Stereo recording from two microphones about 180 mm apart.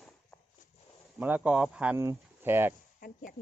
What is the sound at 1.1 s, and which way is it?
Speech, 10° right (ahead or behind).